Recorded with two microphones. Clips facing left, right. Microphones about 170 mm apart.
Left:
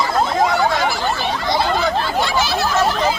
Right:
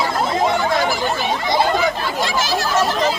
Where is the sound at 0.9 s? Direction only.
50° right (ahead or behind).